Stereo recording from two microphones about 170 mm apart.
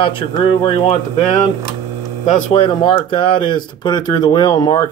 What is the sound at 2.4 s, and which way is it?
Speech, 30° left (ahead or behind).